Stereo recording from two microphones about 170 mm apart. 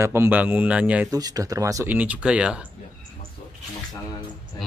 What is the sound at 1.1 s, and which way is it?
Speech, 20° right (ahead or behind).